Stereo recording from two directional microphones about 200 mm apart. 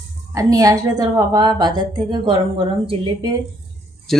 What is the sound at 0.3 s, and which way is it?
A woman's voice, 15° right (ahead or behind).